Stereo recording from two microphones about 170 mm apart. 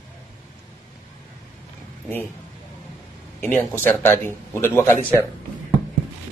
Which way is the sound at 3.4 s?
10° left (ahead or behind).